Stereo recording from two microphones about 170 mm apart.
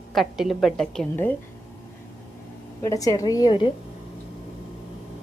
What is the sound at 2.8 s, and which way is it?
Speech, 20° left (ahead or behind).